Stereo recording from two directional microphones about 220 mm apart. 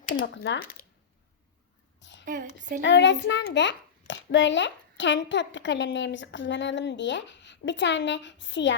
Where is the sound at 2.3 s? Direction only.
35° right (ahead or behind).